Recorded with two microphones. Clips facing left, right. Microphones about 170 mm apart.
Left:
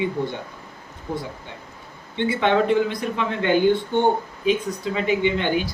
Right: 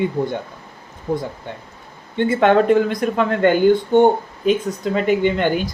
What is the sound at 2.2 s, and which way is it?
Speech, 45° right (ahead or behind).